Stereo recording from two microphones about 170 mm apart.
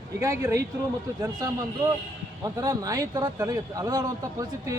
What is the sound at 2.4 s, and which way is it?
A man's voice, 20° right (ahead or behind).